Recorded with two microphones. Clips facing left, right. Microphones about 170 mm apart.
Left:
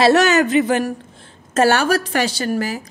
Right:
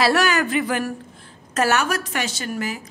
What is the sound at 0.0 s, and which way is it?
A woman's voice, 25° left (ahead or behind).